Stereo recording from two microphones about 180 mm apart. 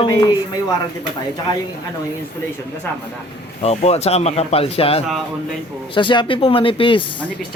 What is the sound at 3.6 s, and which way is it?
Speech, 35° left (ahead or behind).